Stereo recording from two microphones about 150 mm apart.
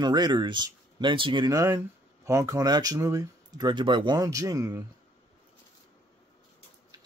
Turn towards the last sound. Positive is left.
turn(degrees=-25)  # may be behind; listen again after turning